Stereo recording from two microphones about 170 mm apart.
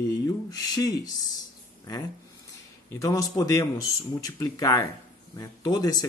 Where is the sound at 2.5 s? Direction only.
20° left (ahead or behind).